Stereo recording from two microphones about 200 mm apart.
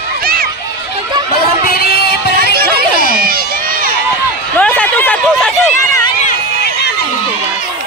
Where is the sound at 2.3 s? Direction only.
50° right (ahead or behind).